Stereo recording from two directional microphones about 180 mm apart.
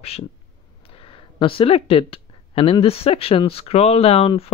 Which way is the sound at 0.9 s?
30° left (ahead or behind).